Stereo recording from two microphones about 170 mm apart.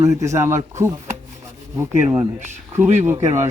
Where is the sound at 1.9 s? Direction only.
10° right (ahead or behind).